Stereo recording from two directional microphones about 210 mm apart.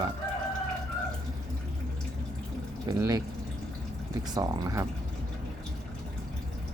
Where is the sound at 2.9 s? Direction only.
15° right (ahead or behind).